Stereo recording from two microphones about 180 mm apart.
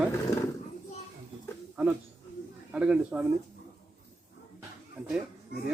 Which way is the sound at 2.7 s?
5° right (ahead or behind).